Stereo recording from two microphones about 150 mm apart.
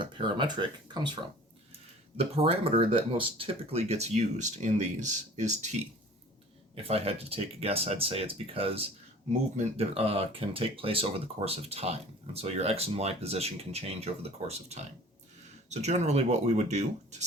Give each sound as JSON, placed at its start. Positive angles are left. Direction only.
{"t": 0.0, "sound": "speech", "side_deg": -35}
{"t": 2.1, "sound": "speech", "side_deg": -40}
{"t": 6.7, "sound": "speech", "side_deg": -40}